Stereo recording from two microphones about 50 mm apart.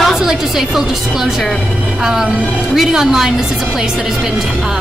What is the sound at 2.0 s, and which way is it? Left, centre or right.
A woman's voice, centre.